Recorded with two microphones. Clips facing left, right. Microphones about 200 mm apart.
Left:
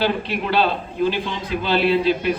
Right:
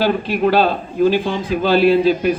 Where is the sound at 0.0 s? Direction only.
45° right (ahead or behind).